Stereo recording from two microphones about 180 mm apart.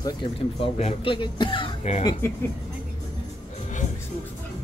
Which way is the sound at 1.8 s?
35° left (ahead or behind).